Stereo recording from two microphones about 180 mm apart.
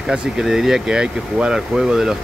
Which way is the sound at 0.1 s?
Centre (ahead or behind).